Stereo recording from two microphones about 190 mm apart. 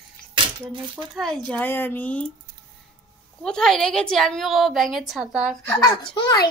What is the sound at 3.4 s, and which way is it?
A woman's voice, 5° left (ahead or behind).